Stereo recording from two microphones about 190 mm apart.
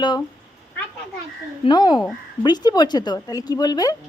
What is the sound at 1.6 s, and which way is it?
Speech, 20° left (ahead or behind).